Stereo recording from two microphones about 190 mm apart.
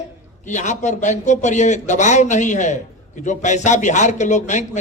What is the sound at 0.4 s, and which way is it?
A man's voice, 40° left (ahead or behind).